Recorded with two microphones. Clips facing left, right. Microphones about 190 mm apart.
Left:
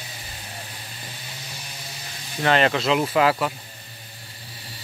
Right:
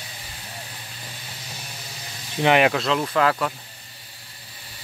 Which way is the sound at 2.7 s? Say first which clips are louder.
Left 2 dB; centre (ahead or behind).